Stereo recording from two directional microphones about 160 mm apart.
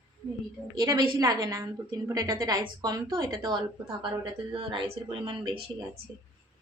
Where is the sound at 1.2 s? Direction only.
20° right (ahead or behind).